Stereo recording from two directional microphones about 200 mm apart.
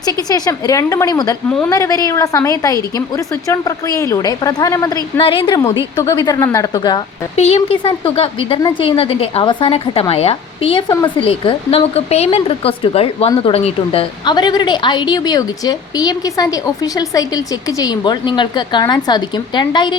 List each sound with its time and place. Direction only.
0.0 s a woman's voice: 20° left (ahead or behind)
7.3 s a woman's voice: 30° left (ahead or behind)